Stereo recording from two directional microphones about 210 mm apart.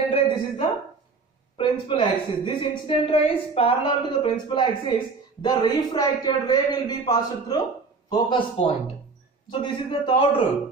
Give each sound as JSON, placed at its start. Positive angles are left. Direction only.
{"t": 0.1, "sound": "speech", "side_deg": 25}